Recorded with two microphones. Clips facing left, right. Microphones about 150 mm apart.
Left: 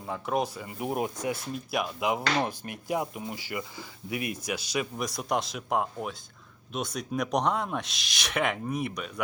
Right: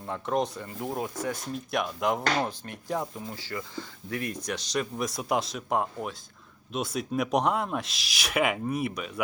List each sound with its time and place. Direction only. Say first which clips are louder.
0.0 s speech: right 1 dB; 5° left (ahead or behind)
0.8 s speech: left 2 dB; 20° left (ahead or behind)
1.5 s speech: right 1 dB; 5° left (ahead or behind)